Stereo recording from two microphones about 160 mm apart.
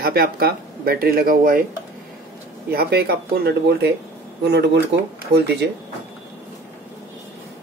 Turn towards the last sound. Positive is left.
turn(degrees=-90)